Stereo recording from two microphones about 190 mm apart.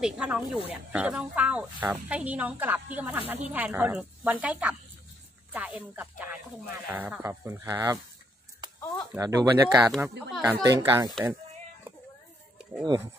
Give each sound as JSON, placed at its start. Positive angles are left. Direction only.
{"t": 0.0, "sound": "speech", "side_deg": -5}
{"t": 9.2, "sound": "speech", "side_deg": -20}
{"t": 9.8, "sound": "speech", "side_deg": 0}
{"t": 10.4, "sound": "speech", "side_deg": -15}
{"t": 12.8, "sound": "speech", "side_deg": -15}